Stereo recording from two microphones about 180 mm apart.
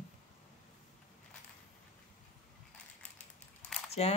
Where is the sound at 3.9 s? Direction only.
35° left (ahead or behind).